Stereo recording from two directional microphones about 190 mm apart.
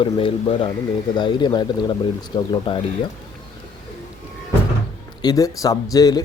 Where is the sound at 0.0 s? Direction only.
25° left (ahead or behind).